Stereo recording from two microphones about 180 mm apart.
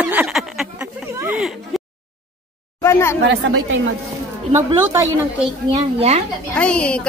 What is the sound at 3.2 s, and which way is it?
Speech, 85° right.